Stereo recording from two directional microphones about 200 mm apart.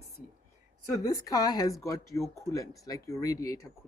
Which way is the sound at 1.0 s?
15° left (ahead or behind).